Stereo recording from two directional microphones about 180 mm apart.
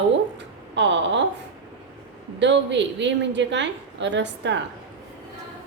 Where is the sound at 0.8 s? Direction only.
80° right.